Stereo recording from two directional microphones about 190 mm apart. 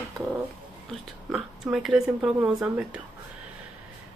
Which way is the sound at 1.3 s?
Centre (ahead or behind).